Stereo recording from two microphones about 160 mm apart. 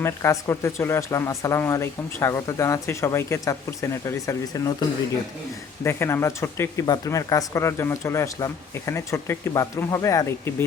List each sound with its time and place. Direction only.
0.0 s speech: 20° left (ahead or behind)